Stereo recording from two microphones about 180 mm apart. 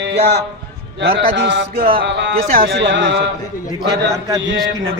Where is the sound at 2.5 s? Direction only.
65° right (ahead or behind).